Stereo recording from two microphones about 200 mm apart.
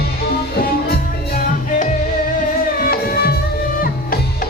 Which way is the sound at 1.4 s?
40° left (ahead or behind).